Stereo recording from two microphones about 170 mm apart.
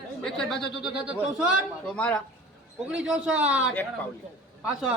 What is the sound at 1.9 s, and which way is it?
Speech, 10° left (ahead or behind).